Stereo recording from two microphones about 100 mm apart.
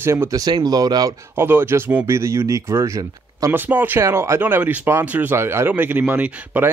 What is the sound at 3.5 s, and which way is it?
Speech, 20° right (ahead or behind).